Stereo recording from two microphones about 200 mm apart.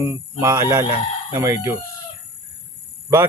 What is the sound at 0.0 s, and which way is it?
A man's voice, 15° right (ahead or behind).